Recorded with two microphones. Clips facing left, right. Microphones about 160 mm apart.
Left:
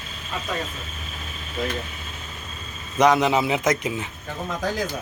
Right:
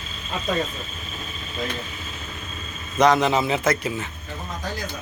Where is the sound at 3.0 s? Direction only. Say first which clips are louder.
Even; 10° left (ahead or behind).